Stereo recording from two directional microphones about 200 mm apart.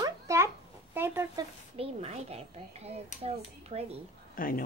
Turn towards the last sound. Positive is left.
turn(degrees=45)  # may be behind; listen again after turning